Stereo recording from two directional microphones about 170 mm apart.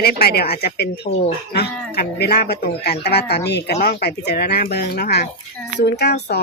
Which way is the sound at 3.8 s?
65° left (ahead or behind).